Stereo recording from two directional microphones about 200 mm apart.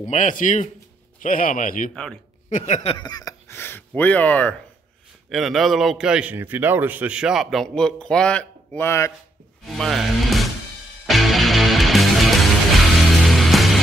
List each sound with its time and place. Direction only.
0.0 s a man's voice: 35° left (ahead or behind); by 9.1 s 15° left (ahead or behind)
9.7 s speech: centre (ahead or behind)
11.1 s music: centre (ahead or behind)